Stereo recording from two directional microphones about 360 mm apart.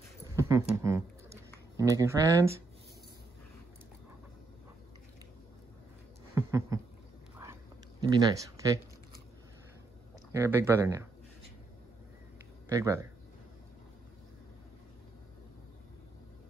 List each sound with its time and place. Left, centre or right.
0.2 s a sound: centre
1.8 s speech: centre
6.3 s a sound: centre
8.0 s speech: centre
10.3 s speech: centre
12.6 s speech: centre